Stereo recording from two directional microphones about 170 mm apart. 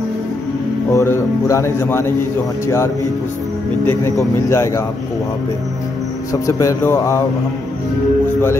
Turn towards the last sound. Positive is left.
turn(degrees=15)  # may be behind; listen again after turning